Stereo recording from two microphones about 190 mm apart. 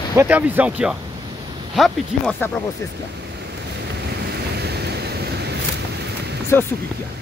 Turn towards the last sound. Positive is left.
turn(degrees=10)  # may be behind; listen again after turning